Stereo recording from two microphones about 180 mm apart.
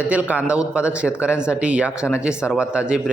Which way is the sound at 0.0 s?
10° right (ahead or behind).